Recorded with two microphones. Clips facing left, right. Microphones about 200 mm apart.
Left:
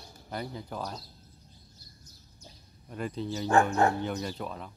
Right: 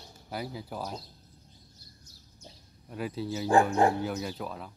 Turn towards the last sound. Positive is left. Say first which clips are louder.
# even
turn(degrees=-5)  # may be behind; listen again after turning